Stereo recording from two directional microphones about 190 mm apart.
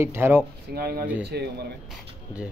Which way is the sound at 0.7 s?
55° right (ahead or behind).